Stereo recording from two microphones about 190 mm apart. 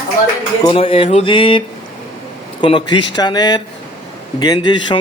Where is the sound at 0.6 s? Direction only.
30° left (ahead or behind).